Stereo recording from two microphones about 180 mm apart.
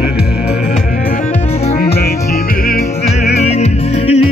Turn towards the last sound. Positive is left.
turn(degrees=35)  # may be behind; listen again after turning